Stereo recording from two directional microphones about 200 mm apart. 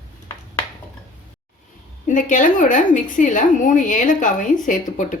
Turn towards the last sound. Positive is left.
turn(degrees=40)  # may be behind; listen again after turning